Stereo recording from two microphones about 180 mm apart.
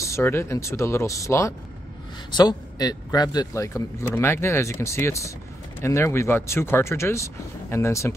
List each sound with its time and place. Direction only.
0.0 s speech: 15° left (ahead or behind)